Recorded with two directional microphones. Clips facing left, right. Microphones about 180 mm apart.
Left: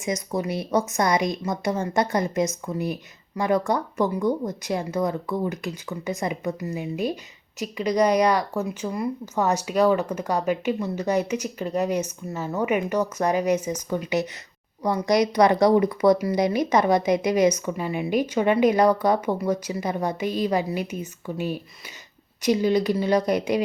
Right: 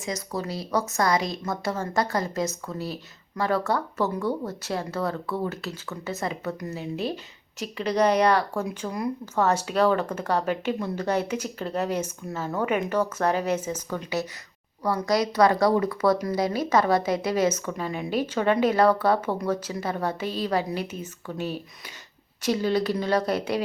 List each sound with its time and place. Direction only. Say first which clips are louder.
0.0 s speech: left 4 dB; 20° left (ahead or behind)